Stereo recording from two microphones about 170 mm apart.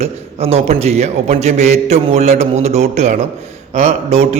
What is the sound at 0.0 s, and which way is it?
A man's voice, 40° right (ahead or behind).